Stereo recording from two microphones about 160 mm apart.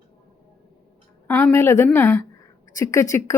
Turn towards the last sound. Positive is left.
turn(degrees=20)  # may be behind; listen again after turning